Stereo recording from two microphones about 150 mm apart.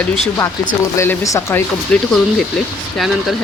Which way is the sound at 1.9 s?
5° left (ahead or behind).